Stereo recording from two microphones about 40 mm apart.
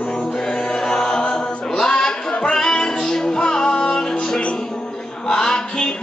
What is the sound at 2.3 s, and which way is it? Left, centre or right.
Music, left.